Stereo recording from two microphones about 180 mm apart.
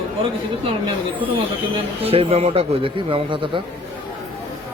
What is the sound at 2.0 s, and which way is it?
Speech, 30° right (ahead or behind).